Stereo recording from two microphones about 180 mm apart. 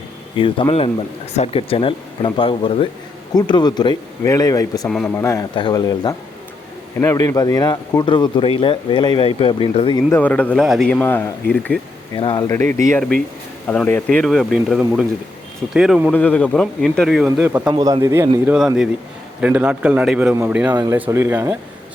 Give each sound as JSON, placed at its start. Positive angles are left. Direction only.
{"t": 0.3, "sound": "speech", "side_deg": 30}
{"t": 4.9, "sound": "speech", "side_deg": 0}
{"t": 5.1, "sound": "speech", "side_deg": 15}
{"t": 10.1, "sound": "speech", "side_deg": 10}
{"t": 12.1, "sound": "speech", "side_deg": 25}
{"t": 12.5, "sound": "speech", "side_deg": 10}
{"t": 16.1, "sound": "speech", "side_deg": 10}
{"t": 17.4, "sound": "speech", "side_deg": -15}
{"t": 18.5, "sound": "speech", "side_deg": -5}
{"t": 20.7, "sound": "speech", "side_deg": -20}